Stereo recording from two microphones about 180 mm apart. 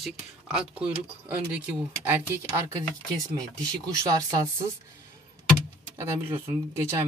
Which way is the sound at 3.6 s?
20° right (ahead or behind).